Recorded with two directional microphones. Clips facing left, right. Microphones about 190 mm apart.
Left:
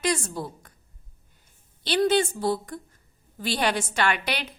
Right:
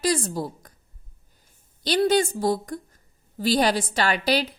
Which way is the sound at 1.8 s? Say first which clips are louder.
Right 2 dB; 40° right (ahead or behind).